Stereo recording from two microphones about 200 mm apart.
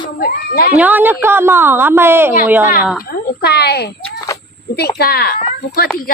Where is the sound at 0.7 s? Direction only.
10° right (ahead or behind).